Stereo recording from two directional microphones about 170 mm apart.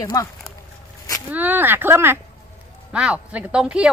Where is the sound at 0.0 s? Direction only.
20° left (ahead or behind).